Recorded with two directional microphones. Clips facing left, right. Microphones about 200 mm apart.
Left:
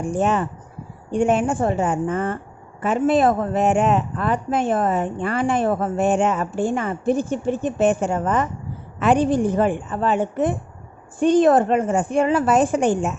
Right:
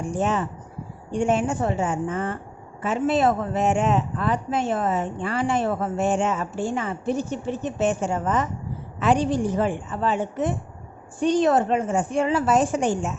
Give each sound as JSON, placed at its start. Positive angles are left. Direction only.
{"t": 0.1, "sound": "a woman's voice", "side_deg": 55}